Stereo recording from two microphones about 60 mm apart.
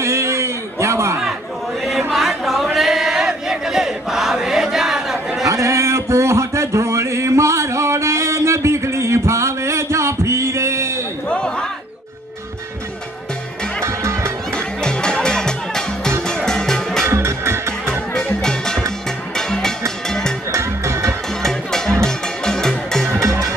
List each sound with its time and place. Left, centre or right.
0.0 s a sound: right
1.9 s chant: centre
5.5 s a sound: right
11.2 s a sound: centre
13.8 s music: right
14.5 s music: centre
17.0 s music: right
18.1 s music: centre
20.5 s music: right
21.4 s music: centre
23.2 s music: right